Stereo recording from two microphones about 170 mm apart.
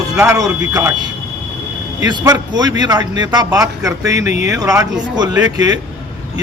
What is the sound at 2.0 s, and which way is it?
Speech, 25° right (ahead or behind).